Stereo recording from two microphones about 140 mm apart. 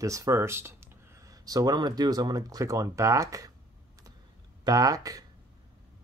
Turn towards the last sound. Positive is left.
turn(degrees=-25)  # may be behind; listen again after turning